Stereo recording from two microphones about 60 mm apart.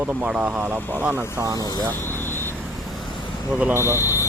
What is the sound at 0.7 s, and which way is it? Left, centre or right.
Speech, left.